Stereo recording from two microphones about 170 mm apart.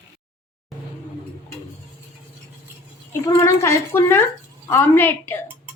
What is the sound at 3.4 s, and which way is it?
A woman's voice, 15° left (ahead or behind).